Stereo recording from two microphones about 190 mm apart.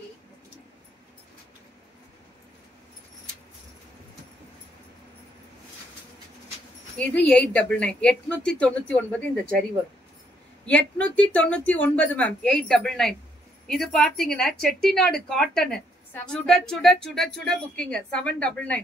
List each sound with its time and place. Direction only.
7.0 s a woman's voice: 5° left (ahead or behind)